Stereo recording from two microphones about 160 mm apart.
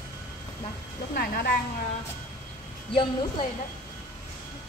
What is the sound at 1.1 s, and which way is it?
Speech, 70° left (ahead or behind).